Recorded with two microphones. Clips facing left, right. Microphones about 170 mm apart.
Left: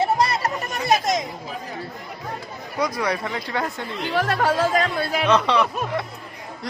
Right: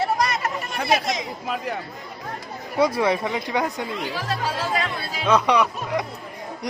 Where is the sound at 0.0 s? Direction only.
30° left (ahead or behind).